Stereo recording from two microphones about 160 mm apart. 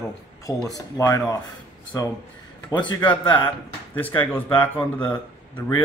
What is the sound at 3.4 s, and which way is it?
Speech, 10° left (ahead or behind).